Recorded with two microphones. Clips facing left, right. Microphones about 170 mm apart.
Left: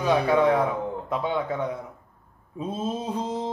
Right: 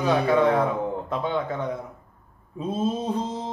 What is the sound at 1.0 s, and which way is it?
Speech, 10° left (ahead or behind).